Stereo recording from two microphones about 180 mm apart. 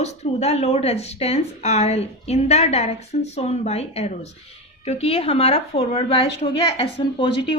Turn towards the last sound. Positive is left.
turn(degrees=30)  # may be behind; listen again after turning